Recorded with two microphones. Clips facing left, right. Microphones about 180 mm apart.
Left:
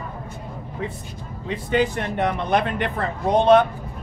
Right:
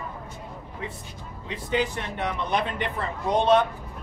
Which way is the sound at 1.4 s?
55° left (ahead or behind).